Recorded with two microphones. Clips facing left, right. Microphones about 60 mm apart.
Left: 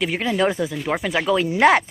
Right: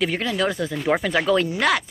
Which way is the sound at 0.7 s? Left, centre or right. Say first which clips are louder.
Right 2 dB; centre.